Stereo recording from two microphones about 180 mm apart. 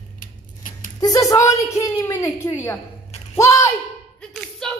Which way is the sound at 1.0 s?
20° left (ahead or behind).